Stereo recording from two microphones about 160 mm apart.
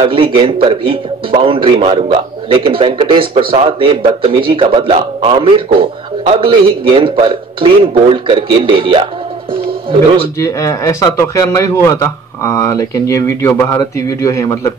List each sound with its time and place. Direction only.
0.0 s a man's voice: 35° right (ahead or behind)
10.4 s a man's voice: 20° left (ahead or behind)